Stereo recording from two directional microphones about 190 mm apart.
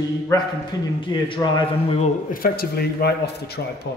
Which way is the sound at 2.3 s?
50° left (ahead or behind).